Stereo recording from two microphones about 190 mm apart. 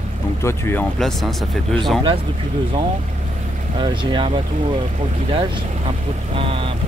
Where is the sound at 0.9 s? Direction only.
Centre (ahead or behind).